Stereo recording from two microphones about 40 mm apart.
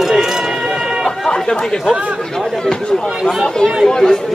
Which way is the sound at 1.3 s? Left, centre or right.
Centre.